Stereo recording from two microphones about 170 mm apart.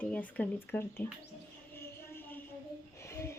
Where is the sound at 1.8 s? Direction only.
15° left (ahead or behind).